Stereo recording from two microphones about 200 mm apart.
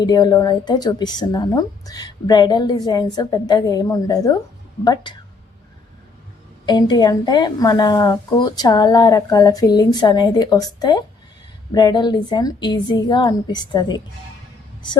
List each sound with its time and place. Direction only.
0.0 s a woman's voice: 20° left (ahead or behind)
6.7 s a woman's voice: 20° left (ahead or behind)